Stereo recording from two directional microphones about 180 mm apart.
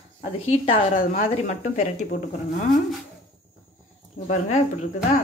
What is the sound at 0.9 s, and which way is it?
A woman's voice, 45° left (ahead or behind).